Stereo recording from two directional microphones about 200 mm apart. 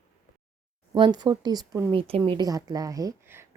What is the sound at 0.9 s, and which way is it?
Speech, 20° right (ahead or behind).